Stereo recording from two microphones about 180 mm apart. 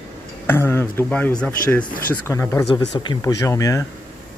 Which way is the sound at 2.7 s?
25° left (ahead or behind).